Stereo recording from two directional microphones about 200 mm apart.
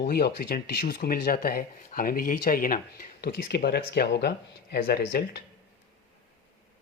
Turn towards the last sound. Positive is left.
turn(degrees=50)  # may be behind; listen again after turning